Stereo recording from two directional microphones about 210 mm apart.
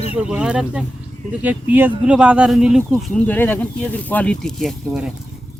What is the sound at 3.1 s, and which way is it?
Speech, 10° left (ahead or behind).